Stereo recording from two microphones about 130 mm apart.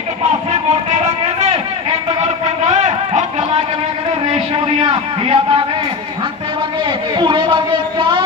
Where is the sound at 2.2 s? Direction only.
60° right (ahead or behind).